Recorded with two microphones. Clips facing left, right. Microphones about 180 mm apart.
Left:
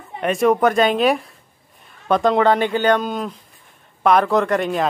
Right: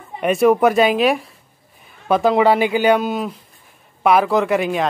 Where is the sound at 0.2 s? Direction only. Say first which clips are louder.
Right 2 dB; 5° right (ahead or behind).